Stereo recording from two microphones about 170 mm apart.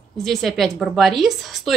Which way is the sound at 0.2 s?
Centre (ahead or behind).